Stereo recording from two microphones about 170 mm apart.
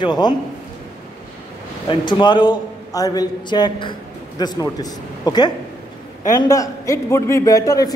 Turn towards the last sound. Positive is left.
turn(degrees=20)  # may be behind; listen again after turning